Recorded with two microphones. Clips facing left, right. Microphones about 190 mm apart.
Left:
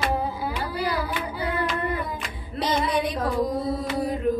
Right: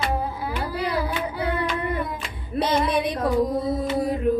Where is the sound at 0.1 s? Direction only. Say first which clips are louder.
Even; centre (ahead or behind).